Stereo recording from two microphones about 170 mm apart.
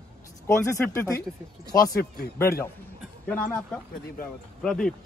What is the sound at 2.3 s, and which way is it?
Speech, 15° left (ahead or behind).